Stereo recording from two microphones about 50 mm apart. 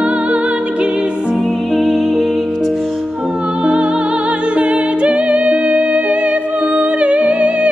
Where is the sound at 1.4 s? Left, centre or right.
Centre.